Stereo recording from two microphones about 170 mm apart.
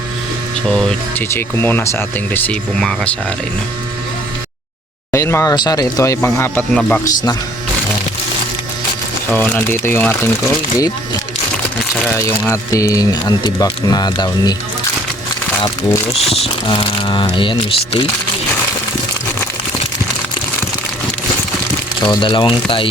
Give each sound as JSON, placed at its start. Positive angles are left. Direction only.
{"t": 0.7, "sound": "speech", "side_deg": 5}
{"t": 1.3, "sound": "speech", "side_deg": 15}
{"t": 5.1, "sound": "speech", "side_deg": 15}
{"t": 7.0, "sound": "speech", "side_deg": 20}
{"t": 9.3, "sound": "speech", "side_deg": 10}
{"t": 11.9, "sound": "speech", "side_deg": 10}
{"t": 16.2, "sound": "speech", "side_deg": 35}
{"t": 22.0, "sound": "speech", "side_deg": 25}